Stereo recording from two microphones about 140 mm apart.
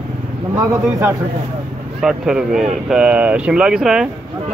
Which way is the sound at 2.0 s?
5° right (ahead or behind).